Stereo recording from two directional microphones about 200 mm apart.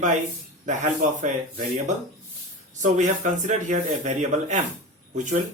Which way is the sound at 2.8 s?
40° right (ahead or behind).